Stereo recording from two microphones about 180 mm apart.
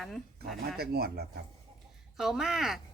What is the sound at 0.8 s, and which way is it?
Speech, 60° right (ahead or behind).